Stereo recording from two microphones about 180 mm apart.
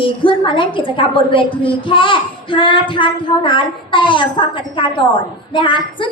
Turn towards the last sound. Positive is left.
turn(degrees=25)  # may be behind; listen again after turning